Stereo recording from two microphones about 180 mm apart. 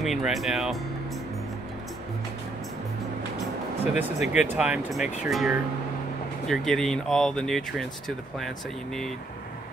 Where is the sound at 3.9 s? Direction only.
5° right (ahead or behind).